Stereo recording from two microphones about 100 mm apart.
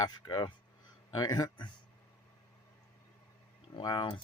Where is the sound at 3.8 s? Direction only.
45° left (ahead or behind).